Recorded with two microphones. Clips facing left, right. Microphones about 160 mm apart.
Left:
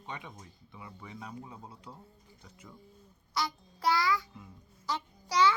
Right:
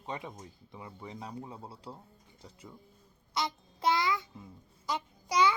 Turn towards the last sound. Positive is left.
turn(degrees=-15)  # may be behind; listen again after turning